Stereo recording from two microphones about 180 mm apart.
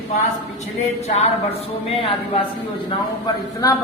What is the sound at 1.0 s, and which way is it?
A woman's voice, 35° left (ahead or behind).